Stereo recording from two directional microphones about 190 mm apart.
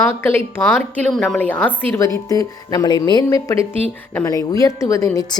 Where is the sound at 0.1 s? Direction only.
10° left (ahead or behind).